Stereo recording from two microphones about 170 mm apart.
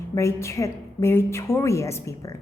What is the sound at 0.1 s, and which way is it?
A woman's voice, 15° left (ahead or behind).